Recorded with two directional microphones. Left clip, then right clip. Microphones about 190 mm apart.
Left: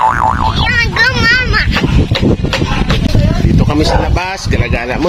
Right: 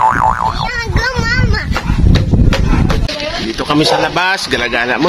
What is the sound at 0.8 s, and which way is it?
Vehicle, 25° right (ahead or behind).